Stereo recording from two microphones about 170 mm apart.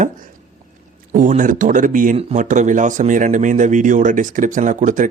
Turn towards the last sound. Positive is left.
turn(degrees=-50)  # may be behind; listen again after turning